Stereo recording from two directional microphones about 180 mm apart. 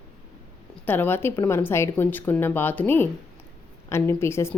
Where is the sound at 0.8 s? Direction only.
10° left (ahead or behind).